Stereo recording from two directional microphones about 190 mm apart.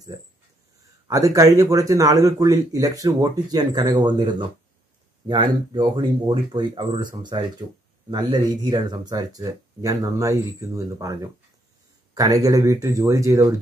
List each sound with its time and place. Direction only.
1.0 s speech: 20° right (ahead or behind)